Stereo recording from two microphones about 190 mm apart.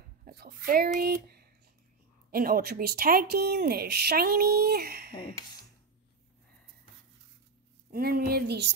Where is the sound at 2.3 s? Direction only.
50° right (ahead or behind).